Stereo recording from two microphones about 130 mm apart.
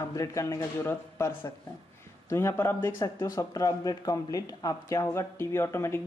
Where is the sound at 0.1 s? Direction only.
25° left (ahead or behind).